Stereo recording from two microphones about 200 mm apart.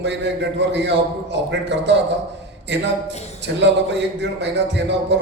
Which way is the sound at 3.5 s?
60° right (ahead or behind).